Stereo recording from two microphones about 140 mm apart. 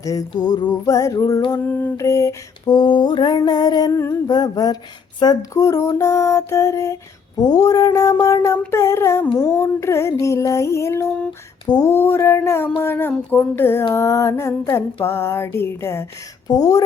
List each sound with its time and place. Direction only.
0.0 s lullaby: 25° left (ahead or behind)
3.9 s lullaby: 20° left (ahead or behind)
11.6 s a sound: 25° left (ahead or behind)
13.9 s lullaby: 20° left (ahead or behind)
15.0 s a sound: 20° left (ahead or behind)
16.5 s lullaby: 25° left (ahead or behind)